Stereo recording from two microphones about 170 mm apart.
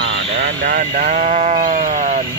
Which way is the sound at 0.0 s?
90° right.